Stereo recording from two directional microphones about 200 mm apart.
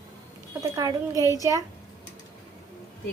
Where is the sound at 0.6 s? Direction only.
20° right (ahead or behind).